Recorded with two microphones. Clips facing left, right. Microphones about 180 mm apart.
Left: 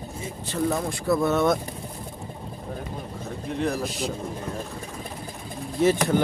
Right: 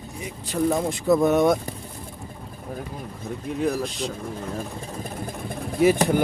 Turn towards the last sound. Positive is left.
turn(degrees=-10)  # may be behind; listen again after turning